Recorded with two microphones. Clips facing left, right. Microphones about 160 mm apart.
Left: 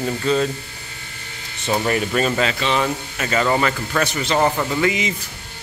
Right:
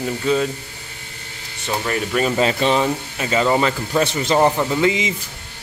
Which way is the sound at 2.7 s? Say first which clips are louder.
Right 2 dB; 15° right (ahead or behind).